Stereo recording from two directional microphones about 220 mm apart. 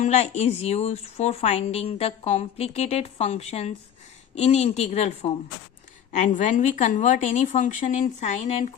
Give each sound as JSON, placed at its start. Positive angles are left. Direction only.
{"t": 0.0, "sound": "a woman's voice", "side_deg": 30}